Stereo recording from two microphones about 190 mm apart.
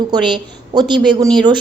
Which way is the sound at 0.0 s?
25° right (ahead or behind).